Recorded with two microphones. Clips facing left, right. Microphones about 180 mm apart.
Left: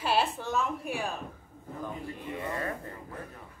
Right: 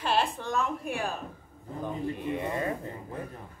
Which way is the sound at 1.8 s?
20° right (ahead or behind).